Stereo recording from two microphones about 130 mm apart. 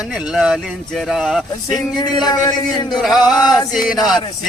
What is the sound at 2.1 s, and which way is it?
Speech, 30° left (ahead or behind).